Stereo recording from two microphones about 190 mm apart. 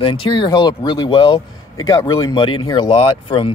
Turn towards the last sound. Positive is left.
turn(degrees=25)  # may be behind; listen again after turning